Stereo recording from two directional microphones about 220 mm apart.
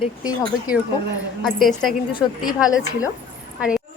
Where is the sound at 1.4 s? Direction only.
Centre (ahead or behind).